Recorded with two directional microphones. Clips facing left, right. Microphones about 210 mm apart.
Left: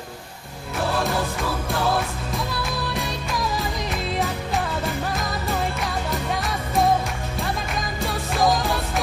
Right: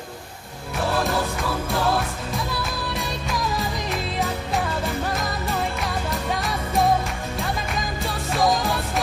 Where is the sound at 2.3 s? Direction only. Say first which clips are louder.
Left 1 dB; centre (ahead or behind).